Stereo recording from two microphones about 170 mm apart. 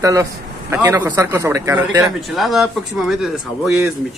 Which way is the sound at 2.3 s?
Centre (ahead or behind).